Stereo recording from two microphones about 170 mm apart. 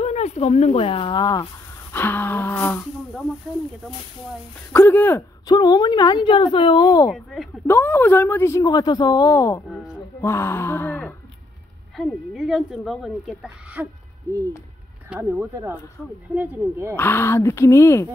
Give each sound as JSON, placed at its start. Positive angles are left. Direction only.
{"t": 0.0, "sound": "speech", "side_deg": 40}
{"t": 4.7, "sound": "speech", "side_deg": 10}
{"t": 5.5, "sound": "speech", "side_deg": 25}
{"t": 7.1, "sound": "a woman's voice", "side_deg": 0}
{"t": 7.6, "sound": "speech", "side_deg": 10}
{"t": 12.0, "sound": "a woman's voice", "side_deg": 0}
{"t": 15.0, "sound": "speech", "side_deg": -10}
{"t": 16.9, "sound": "speech", "side_deg": 15}